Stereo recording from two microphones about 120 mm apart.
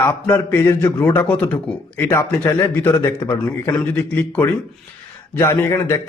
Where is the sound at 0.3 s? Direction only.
20° left (ahead or behind).